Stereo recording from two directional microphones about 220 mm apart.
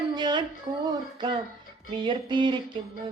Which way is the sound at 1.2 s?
20° right (ahead or behind).